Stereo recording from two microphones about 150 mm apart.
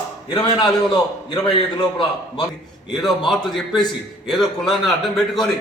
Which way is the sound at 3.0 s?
Centre (ahead or behind).